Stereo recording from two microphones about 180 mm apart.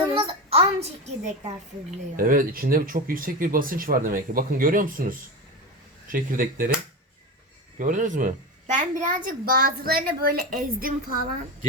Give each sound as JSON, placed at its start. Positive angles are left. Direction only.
{"t": 0.1, "sound": "a sound", "side_deg": -30}
{"t": 2.1, "sound": "a child's voice", "side_deg": -50}
{"t": 7.8, "sound": "a child's voice", "side_deg": -45}